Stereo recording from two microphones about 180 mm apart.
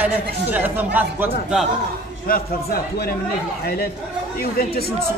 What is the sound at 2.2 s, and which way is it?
Speech, 55° left (ahead or behind).